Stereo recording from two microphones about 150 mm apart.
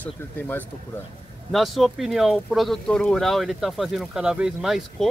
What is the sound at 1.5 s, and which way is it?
Speech, centre (ahead or behind).